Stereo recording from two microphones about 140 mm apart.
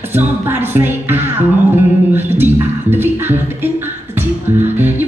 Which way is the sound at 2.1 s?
15° right (ahead or behind).